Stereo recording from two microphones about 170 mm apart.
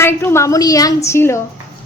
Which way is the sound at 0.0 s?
15° left (ahead or behind).